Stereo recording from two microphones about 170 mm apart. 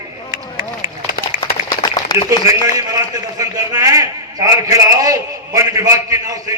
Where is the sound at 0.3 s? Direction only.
20° right (ahead or behind).